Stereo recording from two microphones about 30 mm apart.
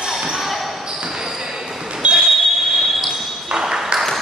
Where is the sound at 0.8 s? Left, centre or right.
Right.